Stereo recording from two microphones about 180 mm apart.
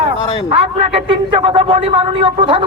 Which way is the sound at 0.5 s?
30° right (ahead or behind).